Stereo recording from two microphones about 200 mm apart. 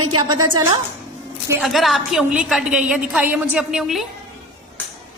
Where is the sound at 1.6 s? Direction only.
Centre (ahead or behind).